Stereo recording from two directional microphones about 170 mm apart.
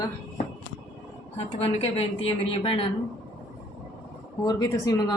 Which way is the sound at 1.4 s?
35° left (ahead or behind).